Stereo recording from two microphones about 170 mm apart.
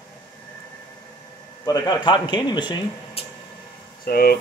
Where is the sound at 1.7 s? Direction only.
25° left (ahead or behind).